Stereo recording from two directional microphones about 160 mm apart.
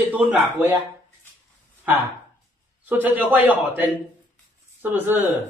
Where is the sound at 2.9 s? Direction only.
10° right (ahead or behind).